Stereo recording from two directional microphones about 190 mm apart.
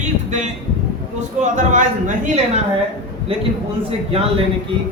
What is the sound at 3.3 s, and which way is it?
Speech, 30° right (ahead or behind).